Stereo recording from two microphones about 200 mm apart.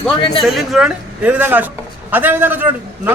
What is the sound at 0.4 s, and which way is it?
A man's voice, centre (ahead or behind).